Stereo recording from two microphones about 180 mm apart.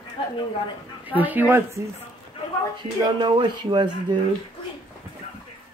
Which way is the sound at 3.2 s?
25° right (ahead or behind).